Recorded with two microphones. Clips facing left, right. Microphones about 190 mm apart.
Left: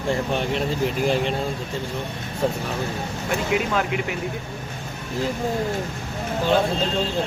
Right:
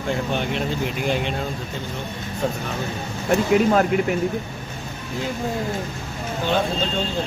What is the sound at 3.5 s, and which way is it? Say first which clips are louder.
Speech: right 6 dB; 40° right (ahead or behind).